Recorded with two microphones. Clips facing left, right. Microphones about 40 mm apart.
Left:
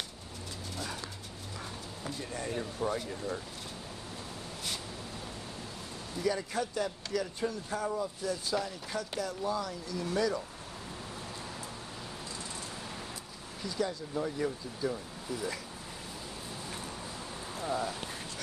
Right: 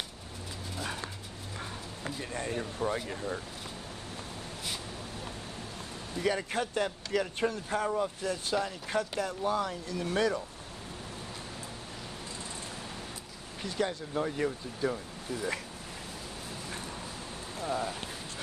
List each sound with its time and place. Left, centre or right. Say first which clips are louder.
2.5 s speech: even; centre
2.9 s speech: right 1 dB; right
6.1 s speech: right 2 dB; right
13.6 s speech: right 2 dB; right
17.6 s speech: right 1 dB; centre